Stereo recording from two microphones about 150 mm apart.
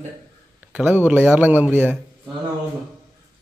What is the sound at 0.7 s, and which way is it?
Speech, 10° right (ahead or behind).